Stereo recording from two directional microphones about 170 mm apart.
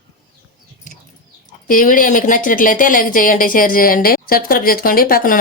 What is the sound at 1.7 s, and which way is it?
A woman's voice, 55° left (ahead or behind).